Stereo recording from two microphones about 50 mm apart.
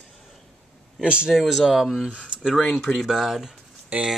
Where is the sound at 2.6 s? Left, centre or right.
Left.